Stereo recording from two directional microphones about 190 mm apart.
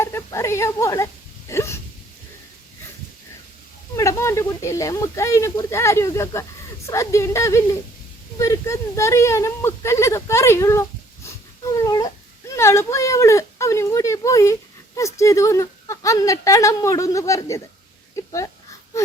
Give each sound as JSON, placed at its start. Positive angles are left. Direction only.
{"t": 0.0, "sound": "speech", "side_deg": 15}
{"t": 3.9, "sound": "speech", "side_deg": 15}